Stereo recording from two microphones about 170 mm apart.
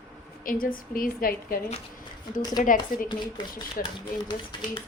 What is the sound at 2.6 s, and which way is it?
Speech, 55° left (ahead or behind).